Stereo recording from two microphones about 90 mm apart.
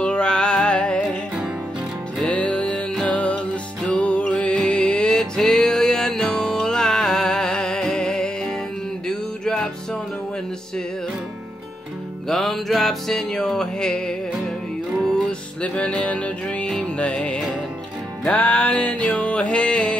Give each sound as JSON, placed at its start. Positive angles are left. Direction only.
{"t": 0.0, "sound": "music", "side_deg": 10}
{"t": 1.0, "sound": "music", "side_deg": -5}
{"t": 2.3, "sound": "music", "side_deg": 15}
{"t": 9.0, "sound": "mantra", "side_deg": 10}
{"t": 12.3, "sound": "music", "side_deg": 5}